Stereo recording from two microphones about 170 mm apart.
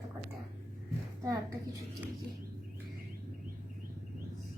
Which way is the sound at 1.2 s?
20° right (ahead or behind).